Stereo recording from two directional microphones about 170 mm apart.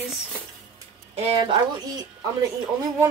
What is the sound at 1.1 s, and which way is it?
Speech, 35° right (ahead or behind).